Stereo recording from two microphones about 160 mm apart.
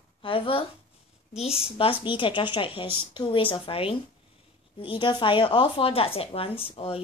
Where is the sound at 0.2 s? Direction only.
35° left (ahead or behind).